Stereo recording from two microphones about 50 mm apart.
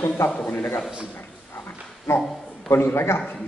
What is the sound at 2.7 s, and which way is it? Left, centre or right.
Speech, left.